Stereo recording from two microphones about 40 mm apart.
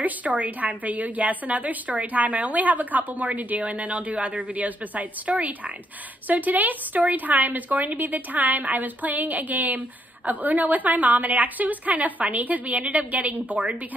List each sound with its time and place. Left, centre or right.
0.0 s a woman's voice: right